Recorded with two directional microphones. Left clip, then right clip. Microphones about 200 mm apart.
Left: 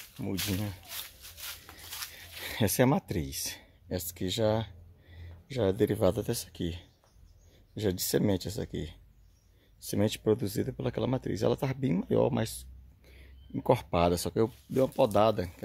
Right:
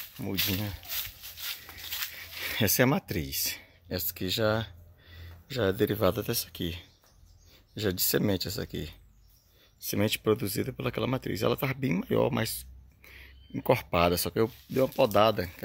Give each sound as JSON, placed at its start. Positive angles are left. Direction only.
{"t": 0.2, "sound": "speech", "side_deg": 0}